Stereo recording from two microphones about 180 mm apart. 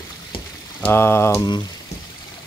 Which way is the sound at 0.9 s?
15° left (ahead or behind).